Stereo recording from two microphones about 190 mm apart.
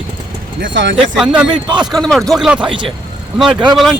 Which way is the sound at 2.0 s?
5° left (ahead or behind).